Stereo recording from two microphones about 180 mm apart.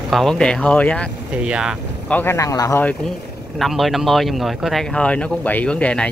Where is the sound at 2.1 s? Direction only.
10° left (ahead or behind).